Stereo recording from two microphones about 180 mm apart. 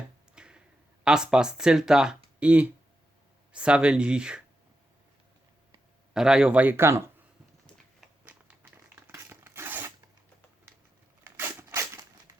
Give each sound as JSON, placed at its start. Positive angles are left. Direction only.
{"t": 0.3, "sound": "tick-tock", "side_deg": -5}
{"t": 1.0, "sound": "speech", "side_deg": -5}
{"t": 6.1, "sound": "speech", "side_deg": -5}
{"t": 8.0, "sound": "a sound", "side_deg": -10}
{"t": 9.0, "sound": "tearing", "side_deg": -15}
{"t": 11.3, "sound": "a sound", "side_deg": -15}